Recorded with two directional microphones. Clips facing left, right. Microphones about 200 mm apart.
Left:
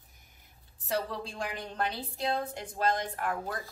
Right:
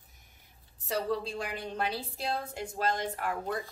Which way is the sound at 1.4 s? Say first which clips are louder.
Even; 5° right (ahead or behind).